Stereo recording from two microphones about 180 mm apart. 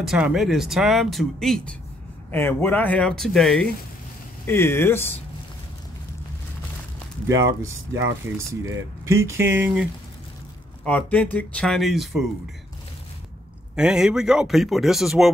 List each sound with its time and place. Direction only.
0.0 s speech: 5° right (ahead or behind)
4.5 s speech: 15° left (ahead or behind)
7.2 s speech: 15° right (ahead or behind)
10.8 s speech: 10° left (ahead or behind)
13.7 s speech: 5° right (ahead or behind)